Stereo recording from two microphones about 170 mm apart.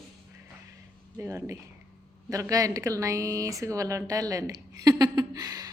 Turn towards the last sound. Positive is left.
turn(degrees=-20)  # may be behind; listen again after turning